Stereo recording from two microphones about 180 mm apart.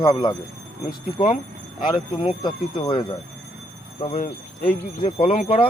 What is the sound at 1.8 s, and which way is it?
Speech, 30° left (ahead or behind).